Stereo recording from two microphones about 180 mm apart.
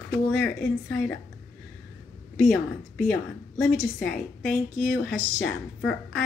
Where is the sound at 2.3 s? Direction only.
5° left (ahead or behind).